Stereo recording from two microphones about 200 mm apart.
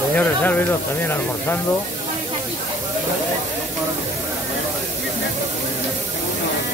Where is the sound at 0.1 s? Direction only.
10° left (ahead or behind).